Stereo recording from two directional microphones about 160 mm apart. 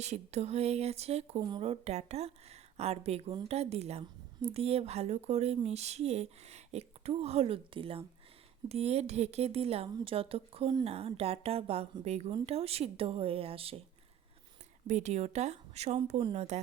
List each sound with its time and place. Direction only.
0.0 s a woman's voice: 45° right (ahead or behind)
1.4 s a woman's voice: 30° right (ahead or behind)
14.8 s a woman's voice: 45° right (ahead or behind)